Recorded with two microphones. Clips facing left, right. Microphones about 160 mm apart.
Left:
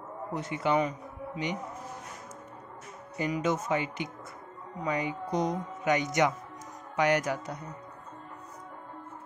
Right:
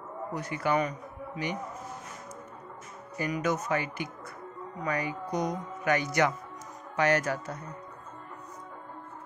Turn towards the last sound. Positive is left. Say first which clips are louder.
# even
turn(degrees=15)  # may be behind; listen again after turning